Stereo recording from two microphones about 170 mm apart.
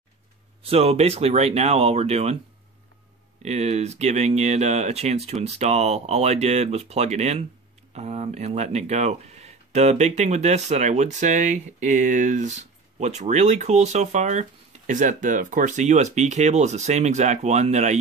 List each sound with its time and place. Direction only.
0.7 s speech: 35° right (ahead or behind)
3.4 s speech: 40° right (ahead or behind)